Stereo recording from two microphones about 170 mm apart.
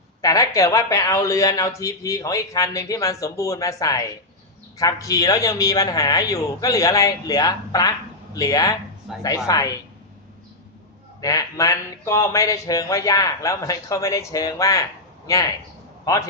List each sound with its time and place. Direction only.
0.2 s a man's voice: 20° left (ahead or behind)
11.2 s a man's voice: 20° left (ahead or behind)